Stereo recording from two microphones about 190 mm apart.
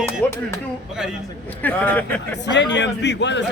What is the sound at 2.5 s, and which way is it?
Speech, 65° left (ahead or behind).